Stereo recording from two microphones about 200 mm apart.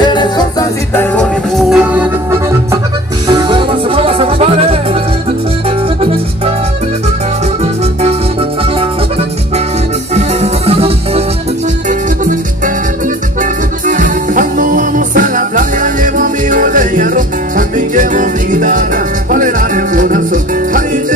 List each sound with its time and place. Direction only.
0.0 s music: 20° left (ahead or behind)
1.7 s music: 5° right (ahead or behind)
3.3 s music: 20° right (ahead or behind)
8.0 s music: 30° right (ahead or behind)
10.1 s music: 30° right (ahead or behind)
11.9 s music: 40° right (ahead or behind)